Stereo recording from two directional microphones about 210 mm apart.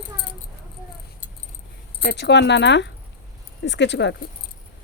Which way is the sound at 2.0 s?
55° left (ahead or behind).